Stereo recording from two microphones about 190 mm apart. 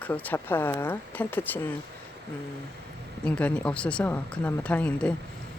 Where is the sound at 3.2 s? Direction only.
5° left (ahead or behind).